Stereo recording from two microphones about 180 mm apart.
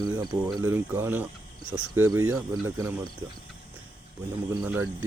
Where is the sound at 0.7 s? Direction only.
10° right (ahead or behind).